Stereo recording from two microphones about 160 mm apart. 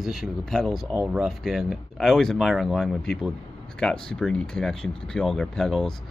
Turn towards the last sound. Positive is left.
turn(degrees=0)  # may be behind; listen again after turning